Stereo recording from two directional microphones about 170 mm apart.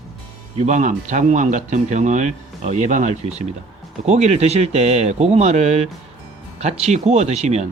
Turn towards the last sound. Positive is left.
turn(degrees=-40)  # may be behind; listen again after turning